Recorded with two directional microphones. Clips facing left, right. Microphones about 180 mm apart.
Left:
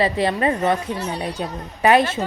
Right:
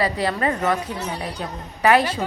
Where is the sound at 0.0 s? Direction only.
25° left (ahead or behind).